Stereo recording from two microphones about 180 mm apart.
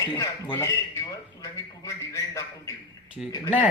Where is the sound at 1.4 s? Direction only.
15° left (ahead or behind).